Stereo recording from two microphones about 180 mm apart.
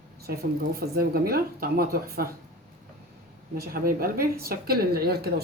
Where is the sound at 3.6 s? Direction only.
55° right (ahead or behind).